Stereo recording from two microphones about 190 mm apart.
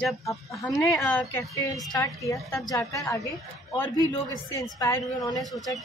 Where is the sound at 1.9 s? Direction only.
20° left (ahead or behind).